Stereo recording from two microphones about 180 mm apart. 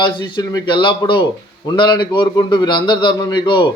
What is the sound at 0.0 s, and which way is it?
A man's voice, 25° left (ahead or behind).